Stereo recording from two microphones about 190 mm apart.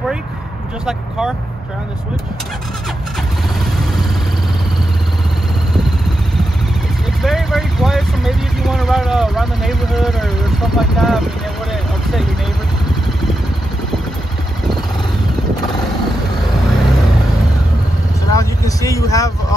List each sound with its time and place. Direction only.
7.2 s speech: centre (ahead or behind)
18.3 s speech: 15° left (ahead or behind)